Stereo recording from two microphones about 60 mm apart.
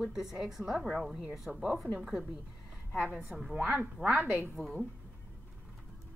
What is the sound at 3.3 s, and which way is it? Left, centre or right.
A woman's voice, centre.